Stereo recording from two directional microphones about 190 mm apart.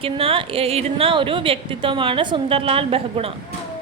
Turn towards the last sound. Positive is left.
turn(degrees=-30)  # may be behind; listen again after turning